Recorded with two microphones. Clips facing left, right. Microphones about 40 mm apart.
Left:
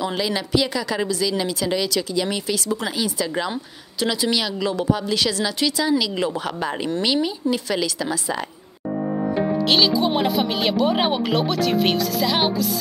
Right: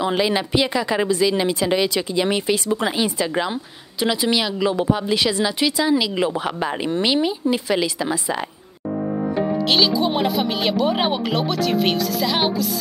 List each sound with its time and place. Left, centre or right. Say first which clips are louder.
0.0 s speech: right 4 dB; right
3.3 s speech: right 2 dB; centre
9.7 s speech: even; centre